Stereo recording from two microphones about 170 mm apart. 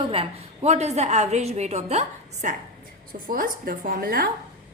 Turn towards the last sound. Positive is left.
turn(degrees=-55)  # may be behind; listen again after turning